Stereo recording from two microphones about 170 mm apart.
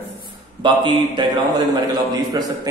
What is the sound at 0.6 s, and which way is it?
Speech, 30° right (ahead or behind).